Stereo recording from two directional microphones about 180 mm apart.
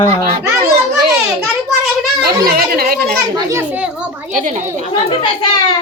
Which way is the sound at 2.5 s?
55° right (ahead or behind).